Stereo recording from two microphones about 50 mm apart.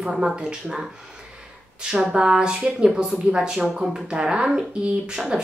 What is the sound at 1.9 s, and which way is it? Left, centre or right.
Speech, centre.